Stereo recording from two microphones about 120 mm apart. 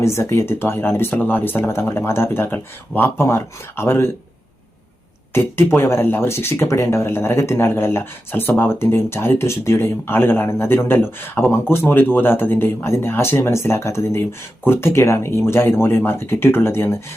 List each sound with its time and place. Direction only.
0.0 s speech: 20° left (ahead or behind)
5.3 s speech: 20° left (ahead or behind)